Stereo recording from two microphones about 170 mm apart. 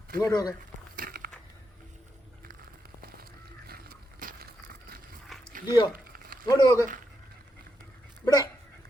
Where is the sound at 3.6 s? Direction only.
60° right (ahead or behind).